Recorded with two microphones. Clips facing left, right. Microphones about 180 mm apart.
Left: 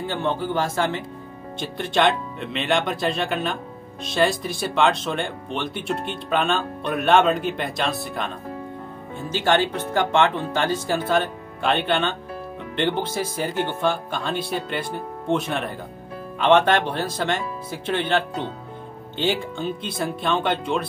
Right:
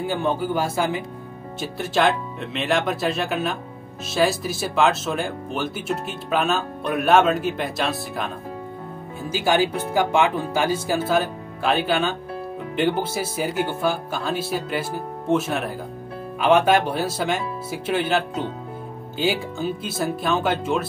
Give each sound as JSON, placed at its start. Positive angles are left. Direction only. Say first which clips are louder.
{"t": 0.0, "sound": "speech", "louder": "right 2 dB", "side_deg": -10}
{"t": 9.3, "sound": "speech", "louder": "even", "side_deg": -10}